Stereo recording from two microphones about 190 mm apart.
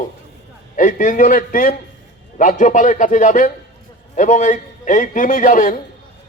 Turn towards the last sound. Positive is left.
turn(degrees=45)  # may be behind; listen again after turning